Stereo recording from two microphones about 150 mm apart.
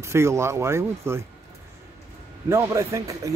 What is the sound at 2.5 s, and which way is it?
Speech, 20° right (ahead or behind).